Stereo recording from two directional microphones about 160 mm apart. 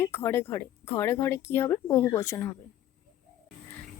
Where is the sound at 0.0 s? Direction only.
15° left (ahead or behind).